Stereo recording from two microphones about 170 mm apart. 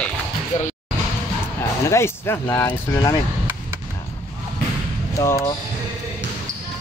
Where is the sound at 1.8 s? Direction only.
15° left (ahead or behind).